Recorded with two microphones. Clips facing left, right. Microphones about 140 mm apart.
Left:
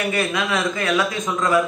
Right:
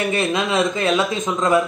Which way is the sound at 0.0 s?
25° right (ahead or behind).